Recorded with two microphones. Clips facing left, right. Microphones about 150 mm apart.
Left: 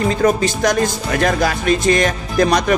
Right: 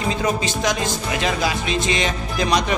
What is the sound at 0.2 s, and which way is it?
Music, 50° left (ahead or behind).